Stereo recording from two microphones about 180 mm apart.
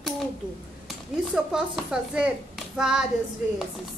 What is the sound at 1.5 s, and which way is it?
A child's voice, 5° right (ahead or behind).